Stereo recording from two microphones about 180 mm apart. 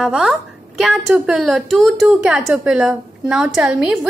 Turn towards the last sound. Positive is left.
turn(degrees=-5)  # may be behind; listen again after turning